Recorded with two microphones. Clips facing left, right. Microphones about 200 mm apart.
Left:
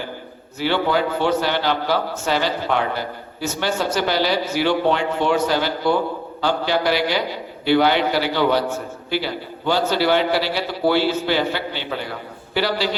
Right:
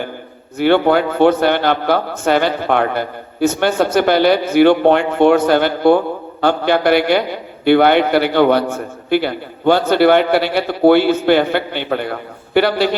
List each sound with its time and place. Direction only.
0.6 s a man's voice: 55° right (ahead or behind)